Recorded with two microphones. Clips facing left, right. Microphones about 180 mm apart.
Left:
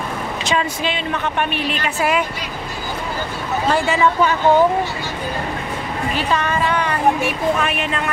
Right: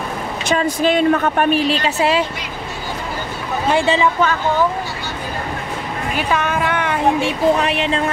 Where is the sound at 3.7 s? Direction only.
25° right (ahead or behind).